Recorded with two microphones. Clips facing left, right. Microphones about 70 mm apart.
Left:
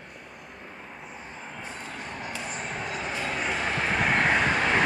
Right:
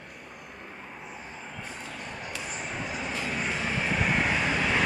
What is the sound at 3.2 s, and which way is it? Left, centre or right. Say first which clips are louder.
Vehicle: left 3 dB; left.